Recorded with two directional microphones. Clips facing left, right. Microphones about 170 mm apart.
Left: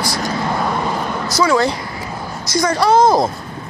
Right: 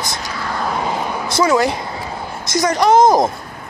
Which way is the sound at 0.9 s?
10° right (ahead or behind).